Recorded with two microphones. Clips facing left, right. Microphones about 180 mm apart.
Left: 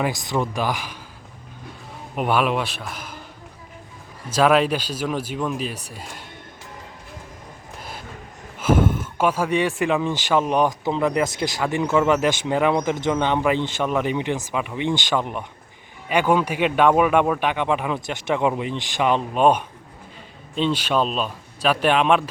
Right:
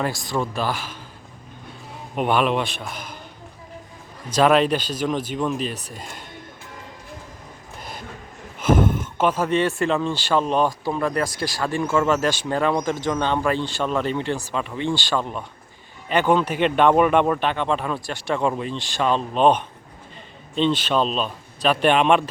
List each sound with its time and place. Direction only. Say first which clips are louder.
0.0 s speech: left 1 dB; 20° left (ahead or behind)
2.1 s a man's voice: right 1 dB; 5° left (ahead or behind)
4.3 s speech: right 1 dB; 5° left (ahead or behind)
7.8 s train: right 1 dB; 5° left (ahead or behind)
8.6 s speech: even; 5° left (ahead or behind)